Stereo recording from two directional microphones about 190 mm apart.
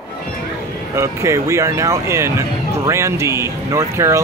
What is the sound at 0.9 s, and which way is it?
Speech, 15° right (ahead or behind).